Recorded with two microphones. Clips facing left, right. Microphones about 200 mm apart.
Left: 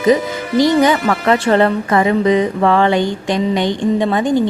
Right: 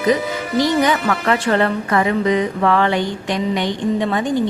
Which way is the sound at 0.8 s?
30° left (ahead or behind).